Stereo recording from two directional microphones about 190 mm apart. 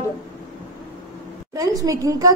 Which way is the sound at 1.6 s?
20° right (ahead or behind).